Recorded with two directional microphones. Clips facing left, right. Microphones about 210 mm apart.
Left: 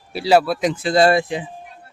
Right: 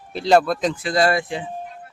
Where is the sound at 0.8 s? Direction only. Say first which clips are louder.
Left 5 dB; 30° left (ahead or behind).